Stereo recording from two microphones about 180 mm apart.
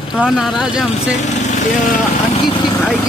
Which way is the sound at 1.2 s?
40° left (ahead or behind).